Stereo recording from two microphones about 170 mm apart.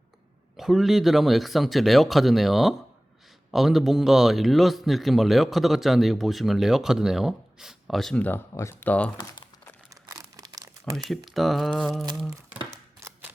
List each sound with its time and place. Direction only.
0.5 s a man's voice: centre (ahead or behind)
9.9 s crumpling: 20° right (ahead or behind)
11.1 s a man's voice: centre (ahead or behind)
13.0 s a sound: 15° right (ahead or behind)